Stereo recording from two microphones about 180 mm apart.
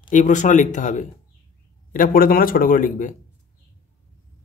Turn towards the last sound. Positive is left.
turn(degrees=45)  # may be behind; listen again after turning